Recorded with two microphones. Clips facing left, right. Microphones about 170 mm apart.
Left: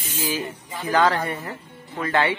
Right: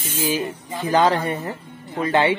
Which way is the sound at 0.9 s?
20° right (ahead or behind).